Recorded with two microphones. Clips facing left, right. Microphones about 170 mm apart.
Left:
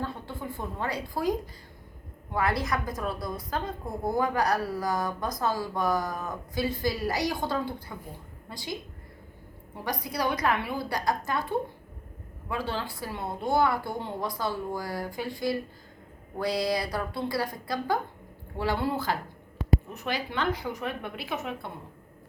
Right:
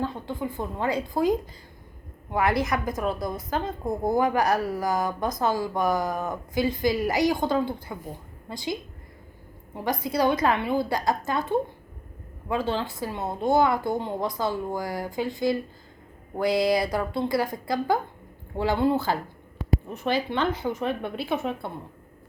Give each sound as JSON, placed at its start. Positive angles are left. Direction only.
{"t": 0.0, "sound": "a woman's voice", "side_deg": -15}
{"t": 2.3, "sound": "speech", "side_deg": -20}
{"t": 9.7, "sound": "speech", "side_deg": -25}